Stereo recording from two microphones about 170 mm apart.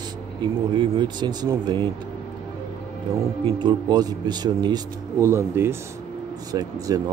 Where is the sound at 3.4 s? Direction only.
25° right (ahead or behind).